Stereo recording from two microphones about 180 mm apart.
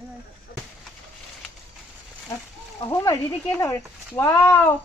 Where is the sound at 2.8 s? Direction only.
15° left (ahead or behind).